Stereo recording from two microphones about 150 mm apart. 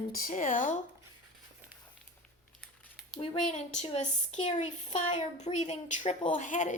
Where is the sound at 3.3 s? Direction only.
60° left (ahead or behind).